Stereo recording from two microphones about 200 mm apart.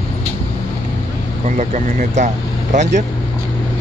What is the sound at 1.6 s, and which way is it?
Speech, 35° right (ahead or behind).